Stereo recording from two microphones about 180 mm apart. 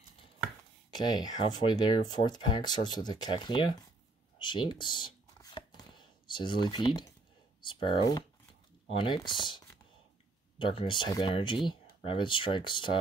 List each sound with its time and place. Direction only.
0.9 s speech: 25° left (ahead or behind)
4.4 s shuffling cards: 25° left (ahead or behind)
7.6 s speech: 25° left (ahead or behind)
10.6 s speech: 30° left (ahead or behind)